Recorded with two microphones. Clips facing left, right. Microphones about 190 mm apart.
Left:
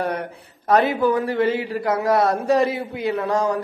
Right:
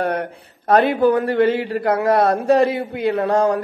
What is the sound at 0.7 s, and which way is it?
A man's voice, 60° right (ahead or behind).